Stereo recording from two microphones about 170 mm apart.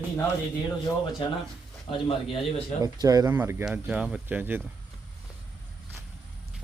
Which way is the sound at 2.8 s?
20° right (ahead or behind).